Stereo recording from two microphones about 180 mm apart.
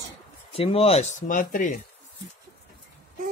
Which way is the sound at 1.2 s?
45° left (ahead or behind).